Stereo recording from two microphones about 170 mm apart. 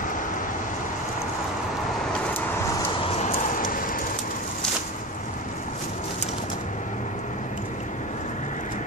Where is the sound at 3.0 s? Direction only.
40° left (ahead or behind); by 4.0 s 55° left (ahead or behind).